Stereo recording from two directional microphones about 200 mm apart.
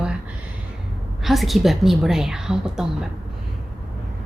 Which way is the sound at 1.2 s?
Centre (ahead or behind).